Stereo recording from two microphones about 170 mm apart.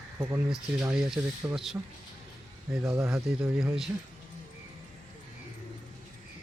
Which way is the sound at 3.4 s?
5° right (ahead or behind).